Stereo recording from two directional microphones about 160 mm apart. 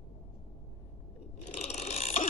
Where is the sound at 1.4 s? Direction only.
45° left (ahead or behind).